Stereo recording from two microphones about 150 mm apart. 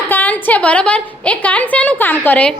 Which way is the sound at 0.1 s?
10° left (ahead or behind).